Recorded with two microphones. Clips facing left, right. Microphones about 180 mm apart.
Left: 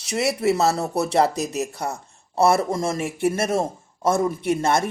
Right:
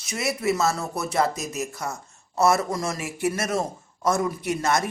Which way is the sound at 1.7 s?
35° left (ahead or behind).